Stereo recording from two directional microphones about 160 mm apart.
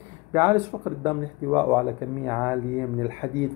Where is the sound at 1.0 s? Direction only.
25° right (ahead or behind).